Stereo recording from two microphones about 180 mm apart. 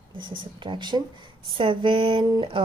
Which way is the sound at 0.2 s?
25° right (ahead or behind).